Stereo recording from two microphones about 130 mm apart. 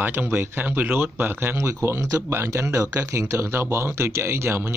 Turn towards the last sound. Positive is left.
turn(degrees=-20)  # may be behind; listen again after turning